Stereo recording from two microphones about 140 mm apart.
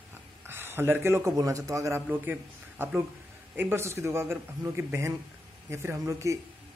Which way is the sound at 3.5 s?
15° right (ahead or behind).